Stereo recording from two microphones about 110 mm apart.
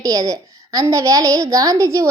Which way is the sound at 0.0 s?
30° right (ahead or behind).